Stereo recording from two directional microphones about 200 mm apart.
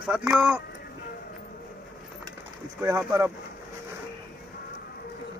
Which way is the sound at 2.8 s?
10° right (ahead or behind).